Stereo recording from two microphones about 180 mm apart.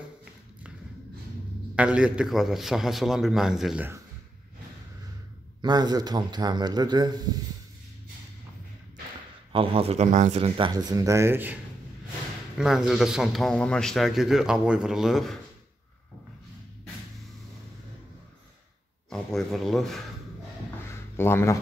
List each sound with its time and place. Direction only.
1.8 s a man's voice: 5° right (ahead or behind)
5.6 s a man's voice: 20° right (ahead or behind)
9.5 s speech: 30° right (ahead or behind)
10.7 s speech: 20° right (ahead or behind)
12.5 s a man's voice: centre (ahead or behind)
19.0 s a man's voice: centre (ahead or behind)
20.9 s a sound: 15° left (ahead or behind)